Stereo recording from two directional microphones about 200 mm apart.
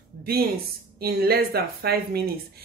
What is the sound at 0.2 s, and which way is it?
Speech, 50° right (ahead or behind).